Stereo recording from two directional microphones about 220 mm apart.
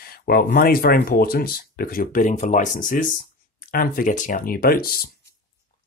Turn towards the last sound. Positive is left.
turn(degrees=40)  # may be behind; listen again after turning